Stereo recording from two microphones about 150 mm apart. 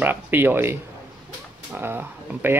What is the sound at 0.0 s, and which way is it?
Speech, 15° right (ahead or behind).